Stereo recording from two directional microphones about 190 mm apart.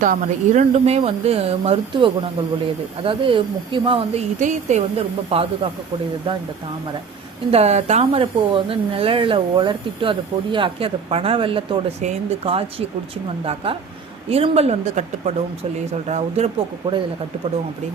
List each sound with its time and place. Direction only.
0.0 s speech: 40° right (ahead or behind)
7.5 s speech: 35° right (ahead or behind)